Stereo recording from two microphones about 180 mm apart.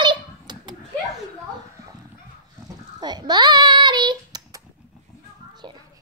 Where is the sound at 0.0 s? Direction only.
25° right (ahead or behind).